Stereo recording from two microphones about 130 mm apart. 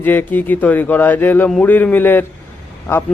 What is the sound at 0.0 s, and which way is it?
Speech, 15° left (ahead or behind).